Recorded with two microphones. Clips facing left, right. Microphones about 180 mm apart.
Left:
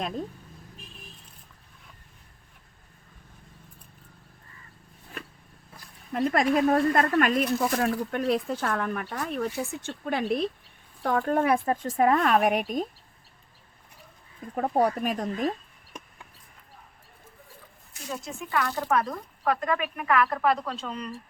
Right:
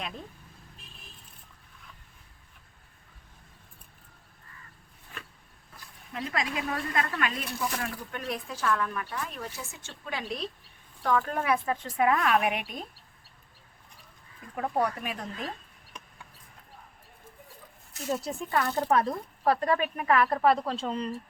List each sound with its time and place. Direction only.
6.1 s speech: 50° left (ahead or behind)
11.0 s speech: 40° left (ahead or behind)
14.5 s speech: 35° left (ahead or behind)
18.1 s a woman's voice: 35° right (ahead or behind)
18.6 s a woman's voice: 20° right (ahead or behind)